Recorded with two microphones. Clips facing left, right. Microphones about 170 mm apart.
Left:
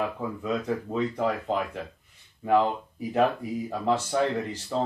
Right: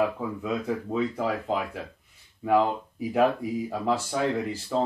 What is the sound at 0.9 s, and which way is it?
Speech, 5° right (ahead or behind).